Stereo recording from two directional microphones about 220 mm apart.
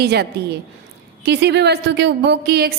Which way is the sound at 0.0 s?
45° right (ahead or behind).